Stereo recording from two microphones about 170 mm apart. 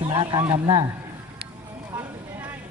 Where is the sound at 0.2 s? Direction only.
25° right (ahead or behind).